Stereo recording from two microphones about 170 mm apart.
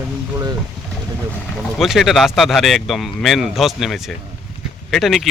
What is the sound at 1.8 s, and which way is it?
Speech, centre (ahead or behind).